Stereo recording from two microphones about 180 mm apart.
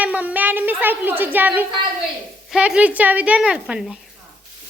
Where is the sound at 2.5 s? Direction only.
5° right (ahead or behind).